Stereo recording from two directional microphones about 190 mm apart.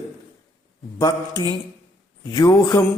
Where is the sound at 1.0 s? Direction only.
20° left (ahead or behind).